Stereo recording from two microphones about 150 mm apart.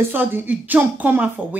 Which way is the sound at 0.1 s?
15° right (ahead or behind).